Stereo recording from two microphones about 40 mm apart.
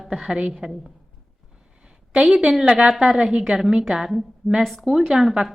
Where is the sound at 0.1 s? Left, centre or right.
Right.